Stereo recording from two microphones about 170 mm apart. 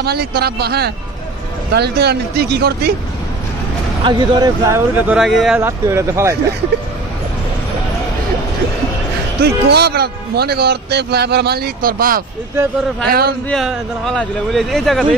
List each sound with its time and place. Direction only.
0.0 s a man's voice: 65° right (ahead or behind)
4.0 s speech: 25° right (ahead or behind); by 5.6 s centre (ahead or behind)
5.6 s speech: 15° right (ahead or behind)
9.4 s a man's voice: 75° right (ahead or behind)
13.5 s speech: centre (ahead or behind)